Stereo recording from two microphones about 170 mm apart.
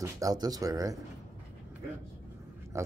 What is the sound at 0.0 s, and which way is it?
Speech, 20° right (ahead or behind).